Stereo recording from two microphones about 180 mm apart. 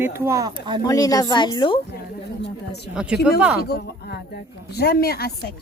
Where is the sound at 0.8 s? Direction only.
20° left (ahead or behind).